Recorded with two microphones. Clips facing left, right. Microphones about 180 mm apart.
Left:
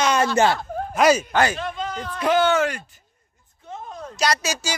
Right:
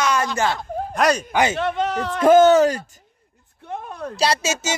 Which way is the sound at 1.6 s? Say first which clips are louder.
Right 7 dB; 70° right (ahead or behind).